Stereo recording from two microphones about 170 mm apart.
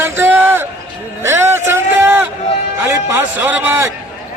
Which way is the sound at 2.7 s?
15° right (ahead or behind).